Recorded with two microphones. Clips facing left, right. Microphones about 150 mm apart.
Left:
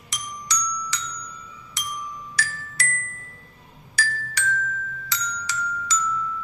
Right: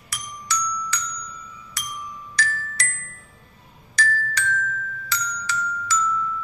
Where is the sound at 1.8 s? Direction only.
20° left (ahead or behind).